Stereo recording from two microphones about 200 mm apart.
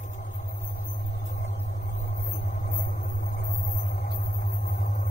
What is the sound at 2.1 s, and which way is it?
Vehicle, 50° left (ahead or behind).